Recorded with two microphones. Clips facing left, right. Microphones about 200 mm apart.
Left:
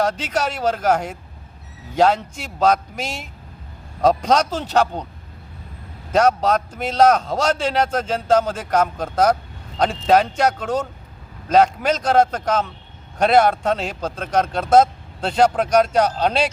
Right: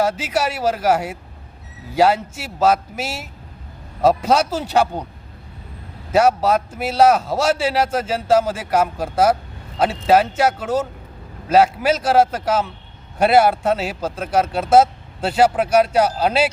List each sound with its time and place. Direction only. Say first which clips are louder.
0.0 s a man's voice: right 1 dB; 5° right (ahead or behind)
6.1 s a man's voice: right 1 dB; 10° right (ahead or behind)